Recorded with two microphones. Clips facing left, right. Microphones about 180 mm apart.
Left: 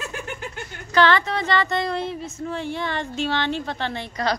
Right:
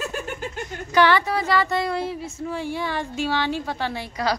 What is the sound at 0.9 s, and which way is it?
Speech, 10° right (ahead or behind).